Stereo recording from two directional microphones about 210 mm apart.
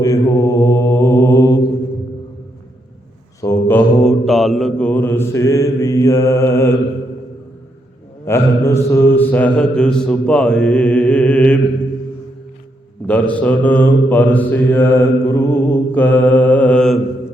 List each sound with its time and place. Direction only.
0.0 s mantra: 15° left (ahead or behind)
3.4 s mantra: 10° left (ahead or behind)
8.2 s mantra: 15° left (ahead or behind)
13.1 s mantra: 5° left (ahead or behind)